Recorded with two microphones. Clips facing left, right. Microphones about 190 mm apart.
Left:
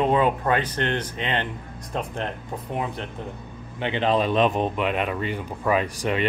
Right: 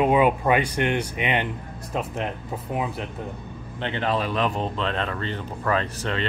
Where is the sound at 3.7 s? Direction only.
15° left (ahead or behind).